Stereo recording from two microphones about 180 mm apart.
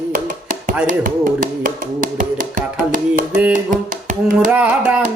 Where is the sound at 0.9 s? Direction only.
45° right (ahead or behind).